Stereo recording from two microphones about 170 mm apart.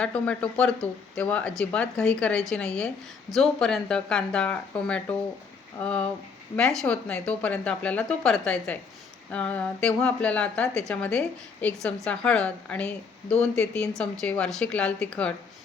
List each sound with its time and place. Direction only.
0.0 s a woman's voice: 5° left (ahead or behind)